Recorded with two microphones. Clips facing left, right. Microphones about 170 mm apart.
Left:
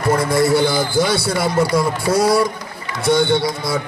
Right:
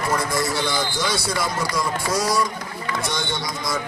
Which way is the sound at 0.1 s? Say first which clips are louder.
Left 10 dB; 55° left (ahead or behind).